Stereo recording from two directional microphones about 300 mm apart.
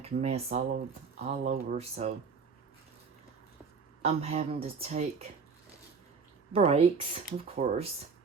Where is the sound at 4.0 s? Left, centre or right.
Right.